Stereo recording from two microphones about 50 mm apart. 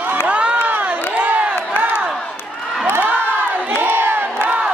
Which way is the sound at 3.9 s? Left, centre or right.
Right.